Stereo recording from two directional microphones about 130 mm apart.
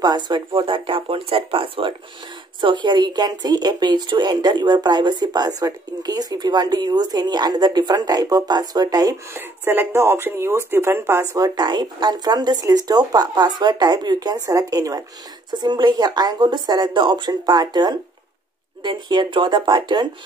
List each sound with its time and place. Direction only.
0.0 s speech: 30° right (ahead or behind)
9.3 s speech: 15° right (ahead or behind)
11.3 s speech: 30° right (ahead or behind)